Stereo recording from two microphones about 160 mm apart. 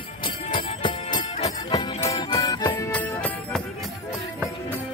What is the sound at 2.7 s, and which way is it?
Music, 10° left (ahead or behind).